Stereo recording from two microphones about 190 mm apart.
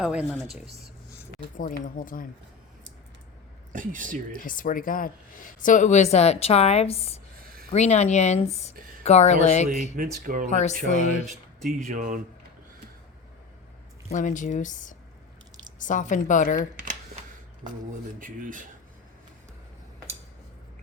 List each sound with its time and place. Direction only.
0.0 s speech: 5° right (ahead or behind)
1.5 s speech: 45° left (ahead or behind)
3.7 s speech: 45° right (ahead or behind)
4.4 s a woman's voice: 45° left (ahead or behind)
9.9 s speech: 45° right (ahead or behind)
10.5 s a woman's voice: 35° left (ahead or behind)
11.9 s speech: 45° right (ahead or behind)
14.1 s a woman's voice: 40° left (ahead or behind)
16.7 s camera: 45° right (ahead or behind)
18.2 s speech: 45° right (ahead or behind)